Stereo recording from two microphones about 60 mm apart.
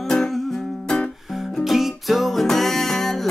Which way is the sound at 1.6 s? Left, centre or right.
Centre.